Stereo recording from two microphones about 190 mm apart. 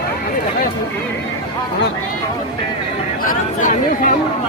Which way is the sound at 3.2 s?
45° left (ahead or behind).